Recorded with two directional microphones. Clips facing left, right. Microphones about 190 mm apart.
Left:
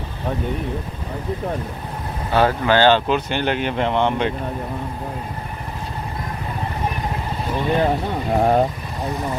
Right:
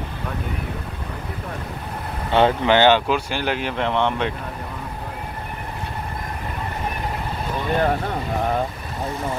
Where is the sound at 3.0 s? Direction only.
5° right (ahead or behind).